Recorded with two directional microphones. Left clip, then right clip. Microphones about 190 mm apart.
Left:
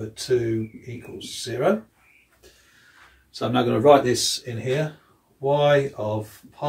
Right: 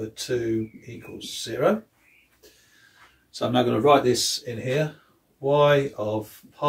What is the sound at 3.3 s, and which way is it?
Speech, 25° right (ahead or behind).